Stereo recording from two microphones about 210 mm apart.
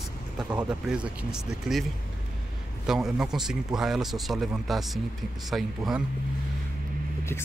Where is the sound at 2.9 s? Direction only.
Centre (ahead or behind).